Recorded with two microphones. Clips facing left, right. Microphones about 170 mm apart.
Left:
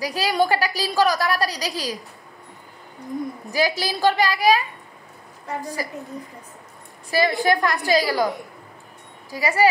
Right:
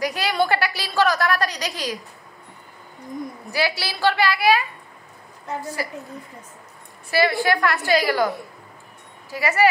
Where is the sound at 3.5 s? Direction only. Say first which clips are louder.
Left 2 dB; 40° left (ahead or behind).